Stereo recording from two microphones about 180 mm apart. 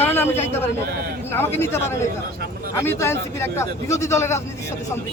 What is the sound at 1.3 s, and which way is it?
Speech, 10° left (ahead or behind).